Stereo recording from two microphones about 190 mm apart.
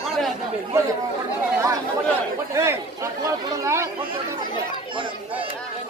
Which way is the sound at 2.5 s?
15° right (ahead or behind).